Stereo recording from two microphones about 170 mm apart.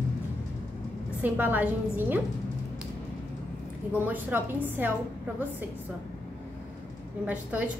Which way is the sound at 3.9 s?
10° right (ahead or behind).